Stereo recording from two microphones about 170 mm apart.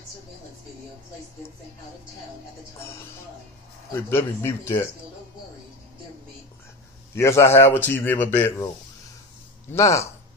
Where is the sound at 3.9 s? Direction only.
15° left (ahead or behind).